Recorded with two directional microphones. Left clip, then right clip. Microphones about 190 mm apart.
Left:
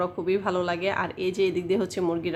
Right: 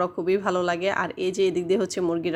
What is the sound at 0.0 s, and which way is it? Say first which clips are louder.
A woman's voice: right 2 dB; 30° right (ahead or behind).